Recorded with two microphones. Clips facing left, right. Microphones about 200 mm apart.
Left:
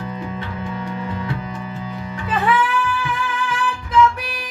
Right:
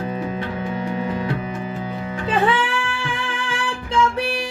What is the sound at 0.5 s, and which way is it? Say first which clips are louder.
Music: right 3 dB; 20° right (ahead or behind).